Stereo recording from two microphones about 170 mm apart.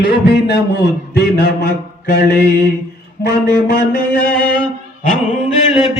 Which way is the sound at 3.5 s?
65° left (ahead or behind).